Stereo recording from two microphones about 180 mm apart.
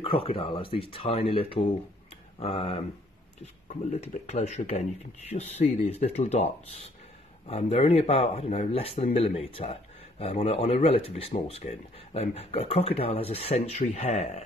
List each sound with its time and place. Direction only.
0.0 s speech: 30° left (ahead or behind)